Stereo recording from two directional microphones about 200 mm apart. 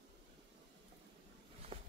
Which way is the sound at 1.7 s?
30° right (ahead or behind).